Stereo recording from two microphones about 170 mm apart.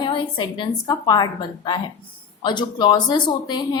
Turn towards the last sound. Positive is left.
turn(degrees=25)  # may be behind; listen again after turning